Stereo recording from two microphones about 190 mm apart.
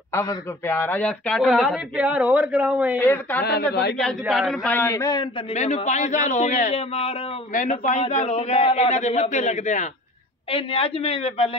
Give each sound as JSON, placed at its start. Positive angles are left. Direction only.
{"t": 0.1, "sound": "speech", "side_deg": 15}
{"t": 3.0, "sound": "a man's voice", "side_deg": 10}
{"t": 4.0, "sound": "speech", "side_deg": -5}
{"t": 4.6, "sound": "a man's voice", "side_deg": 10}
{"t": 5.5, "sound": "a man's voice", "side_deg": 35}
{"t": 7.5, "sound": "a man's voice", "side_deg": 45}